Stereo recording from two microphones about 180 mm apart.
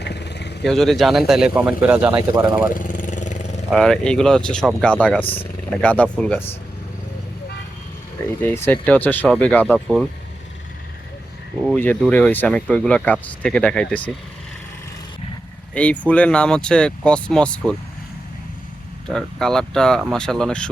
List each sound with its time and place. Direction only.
0.0 s vehicle: 70° left (ahead or behind)
0.6 s a man's voice: 5° left (ahead or behind); by 2.6 s 20° right (ahead or behind)
2.6 s vehicle: 45° left (ahead or behind)
3.7 s speech: centre (ahead or behind)
8.4 s speech: 10° left (ahead or behind)
11.8 s speech: 10° left (ahead or behind)
15.7 s speech: 5° left (ahead or behind)
19.0 s speech: 5° left (ahead or behind)